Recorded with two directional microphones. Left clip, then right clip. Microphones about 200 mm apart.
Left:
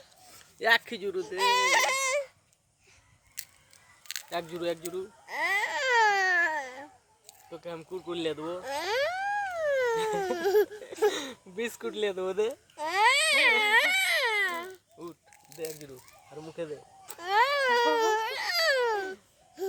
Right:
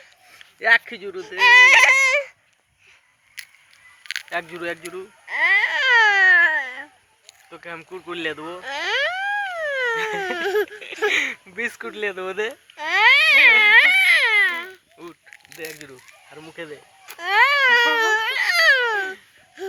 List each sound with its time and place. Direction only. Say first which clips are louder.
0.3 s speech: right 8 dB; 15° left (ahead or behind)
1.2 s speech: right 14 dB; centre (ahead or behind)
4.0 s a sound: right 10 dB; 15° left (ahead or behind)
4.3 s speech: right 3 dB; centre (ahead or behind)
5.2 s baby cry: right 11 dB; 15° left (ahead or behind)
7.6 s speech: right 4 dB; 5° right (ahead or behind)
8.4 s speech: right 3 dB; 30° right (ahead or behind)
8.6 s a sound: right 7 dB; 15° left (ahead or behind)
9.9 s speech: right 5 dB; 5° right (ahead or behind)
12.8 s a sound: right 9 dB; 10° left (ahead or behind)
15.6 s speech: right 4 dB; 10° right (ahead or behind)
16.6 s baby cry: right 2 dB; 5° right (ahead or behind)